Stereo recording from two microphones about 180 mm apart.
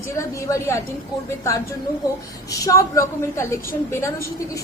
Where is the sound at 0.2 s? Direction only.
15° left (ahead or behind).